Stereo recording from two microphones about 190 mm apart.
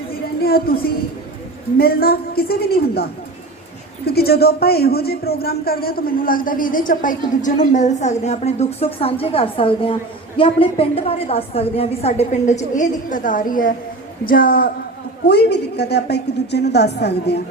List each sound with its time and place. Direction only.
0.4 s a woman's voice: 50° left (ahead or behind)
15.3 s a woman's voice: 60° left (ahead or behind)